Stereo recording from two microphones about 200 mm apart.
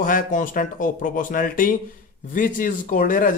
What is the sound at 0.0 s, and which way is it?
Speech, 40° left (ahead or behind).